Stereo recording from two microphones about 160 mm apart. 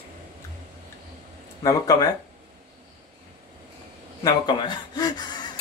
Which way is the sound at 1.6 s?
20° left (ahead or behind).